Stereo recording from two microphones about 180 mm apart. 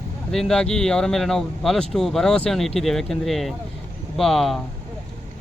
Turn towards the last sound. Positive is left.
turn(degrees=0)  # may be behind; listen again after turning